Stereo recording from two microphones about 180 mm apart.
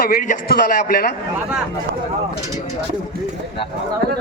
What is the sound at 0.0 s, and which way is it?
A man's voice, 55° left (ahead or behind).